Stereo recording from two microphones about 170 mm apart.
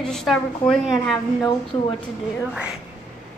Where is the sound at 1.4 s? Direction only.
30° left (ahead or behind).